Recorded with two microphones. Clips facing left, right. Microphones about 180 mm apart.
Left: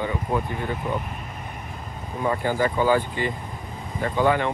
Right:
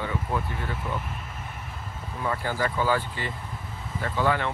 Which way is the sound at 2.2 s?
15° left (ahead or behind).